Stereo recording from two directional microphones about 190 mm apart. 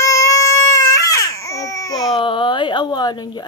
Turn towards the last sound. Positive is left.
turn(degrees=20)  # may be behind; listen again after turning